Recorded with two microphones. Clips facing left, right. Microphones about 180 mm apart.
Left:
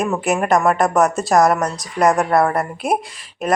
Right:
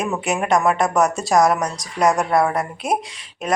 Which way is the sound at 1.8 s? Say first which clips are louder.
Left 2 dB; 55° left (ahead or behind).